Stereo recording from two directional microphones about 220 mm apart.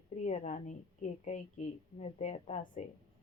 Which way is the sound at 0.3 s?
30° left (ahead or behind).